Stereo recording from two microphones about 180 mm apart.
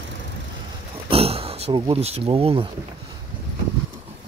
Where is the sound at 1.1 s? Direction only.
35° right (ahead or behind).